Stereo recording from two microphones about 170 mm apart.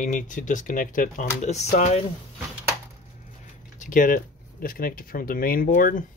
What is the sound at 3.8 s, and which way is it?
Speech, 50° left (ahead or behind).